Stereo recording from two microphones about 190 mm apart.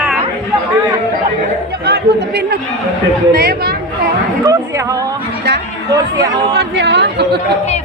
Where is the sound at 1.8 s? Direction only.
60° right (ahead or behind).